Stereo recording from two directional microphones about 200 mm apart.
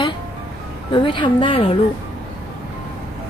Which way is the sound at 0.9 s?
25° left (ahead or behind).